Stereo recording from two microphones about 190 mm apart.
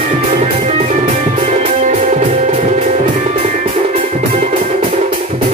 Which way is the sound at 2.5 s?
45° right (ahead or behind).